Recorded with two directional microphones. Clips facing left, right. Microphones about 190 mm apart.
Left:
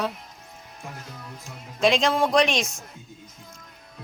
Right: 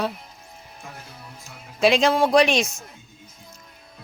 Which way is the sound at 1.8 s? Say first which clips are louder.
Right 3 dB; 5° right (ahead or behind).